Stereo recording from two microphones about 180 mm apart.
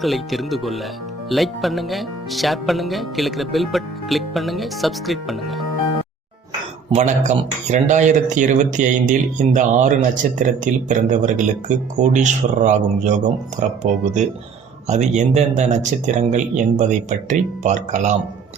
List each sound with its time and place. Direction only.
0.0 s speech: centre (ahead or behind)
6.9 s speech: 40° right (ahead or behind)